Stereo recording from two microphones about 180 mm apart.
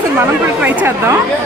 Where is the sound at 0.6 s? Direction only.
10° right (ahead or behind).